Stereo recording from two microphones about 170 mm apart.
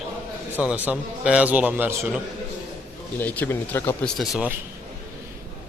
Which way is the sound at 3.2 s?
10° left (ahead or behind).